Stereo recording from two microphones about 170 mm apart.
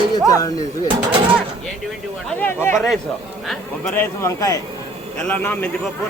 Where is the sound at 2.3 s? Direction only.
10° left (ahead or behind).